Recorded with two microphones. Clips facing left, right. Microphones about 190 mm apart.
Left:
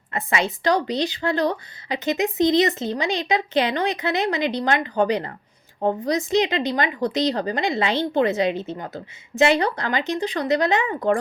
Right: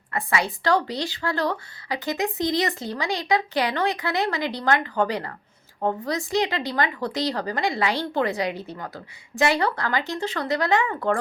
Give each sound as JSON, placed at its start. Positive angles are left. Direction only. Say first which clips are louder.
{"t": 0.1, "sound": "a woman's voice", "louder": "left 1 dB", "side_deg": 20}